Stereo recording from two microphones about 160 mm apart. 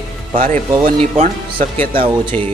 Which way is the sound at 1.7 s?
10° left (ahead or behind).